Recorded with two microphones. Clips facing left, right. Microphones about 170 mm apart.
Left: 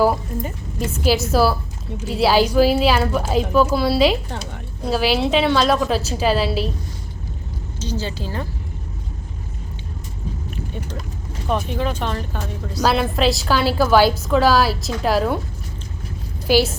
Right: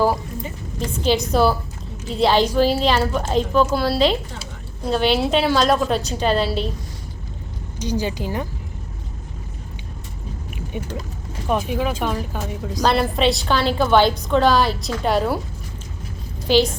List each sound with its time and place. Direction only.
1.0 s a woman's voice: 5° left (ahead or behind)
7.8 s speech: 15° right (ahead or behind)
10.7 s speech: 15° right (ahead or behind)
12.8 s a woman's voice: centre (ahead or behind)
16.5 s a woman's voice: 10° left (ahead or behind)